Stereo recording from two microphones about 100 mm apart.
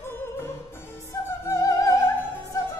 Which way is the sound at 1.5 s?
30° left (ahead or behind).